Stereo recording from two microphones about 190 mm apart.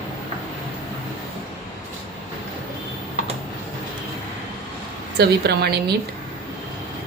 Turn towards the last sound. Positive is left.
turn(degrees=-60)  # may be behind; listen again after turning